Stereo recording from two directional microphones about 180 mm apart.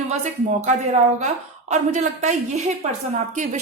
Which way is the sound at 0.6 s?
40° right (ahead or behind).